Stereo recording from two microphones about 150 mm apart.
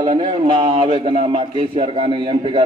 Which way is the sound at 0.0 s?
30° right (ahead or behind).